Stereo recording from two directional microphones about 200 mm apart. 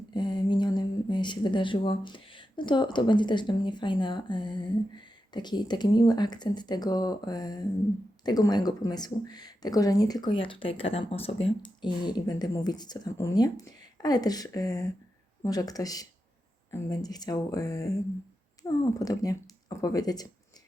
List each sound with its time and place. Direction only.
0.1 s speech: 20° left (ahead or behind)